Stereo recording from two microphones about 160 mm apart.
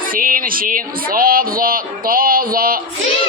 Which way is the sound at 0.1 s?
60° right (ahead or behind).